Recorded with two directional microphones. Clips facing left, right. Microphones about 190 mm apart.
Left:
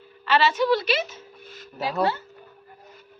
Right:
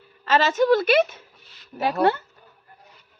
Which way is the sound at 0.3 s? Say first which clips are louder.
Right 2 dB; 45° right (ahead or behind).